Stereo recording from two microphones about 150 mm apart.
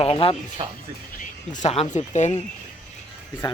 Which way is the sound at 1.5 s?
50° left (ahead or behind).